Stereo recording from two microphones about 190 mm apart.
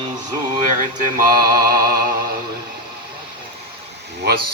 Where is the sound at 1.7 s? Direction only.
50° right (ahead or behind).